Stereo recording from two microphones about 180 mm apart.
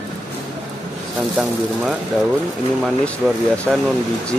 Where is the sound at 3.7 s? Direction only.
Centre (ahead or behind).